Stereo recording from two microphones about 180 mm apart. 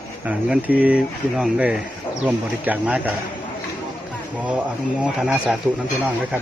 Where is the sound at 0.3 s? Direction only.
10° right (ahead or behind).